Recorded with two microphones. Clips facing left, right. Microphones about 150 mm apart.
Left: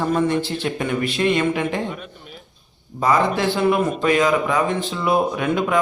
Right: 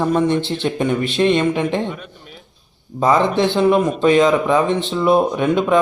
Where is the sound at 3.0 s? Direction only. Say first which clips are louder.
Right 3 dB; 25° right (ahead or behind).